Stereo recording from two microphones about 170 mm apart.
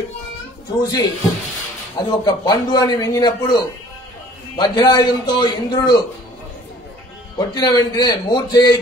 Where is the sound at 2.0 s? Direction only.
25° left (ahead or behind).